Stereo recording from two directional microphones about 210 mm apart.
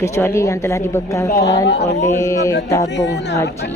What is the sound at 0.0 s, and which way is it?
Speech, 15° left (ahead or behind).